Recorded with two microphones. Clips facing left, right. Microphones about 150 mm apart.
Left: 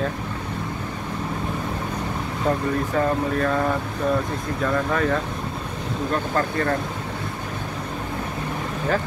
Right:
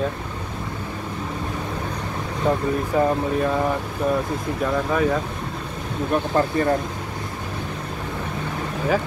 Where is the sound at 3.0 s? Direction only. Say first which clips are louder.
Right 2 dB; 10° right (ahead or behind).